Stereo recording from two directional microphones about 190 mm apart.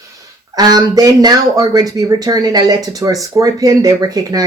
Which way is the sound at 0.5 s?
20° right (ahead or behind).